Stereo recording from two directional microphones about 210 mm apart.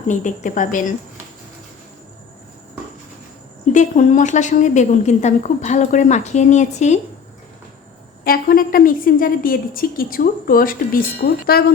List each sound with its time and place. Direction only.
0.1 s a woman's voice: 35° left (ahead or behind)
3.7 s a woman's voice: 35° left (ahead or behind)
8.2 s a woman's voice: 45° left (ahead or behind)